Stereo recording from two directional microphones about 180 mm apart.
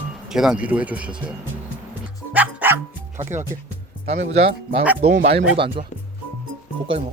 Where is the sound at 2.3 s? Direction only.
10° right (ahead or behind).